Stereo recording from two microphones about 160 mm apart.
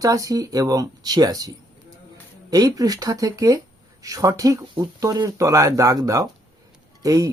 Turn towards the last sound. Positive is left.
turn(degrees=-20)  # may be behind; listen again after turning